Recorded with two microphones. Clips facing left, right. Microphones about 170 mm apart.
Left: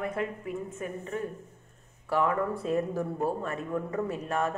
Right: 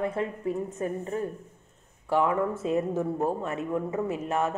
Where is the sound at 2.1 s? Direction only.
25° right (ahead or behind).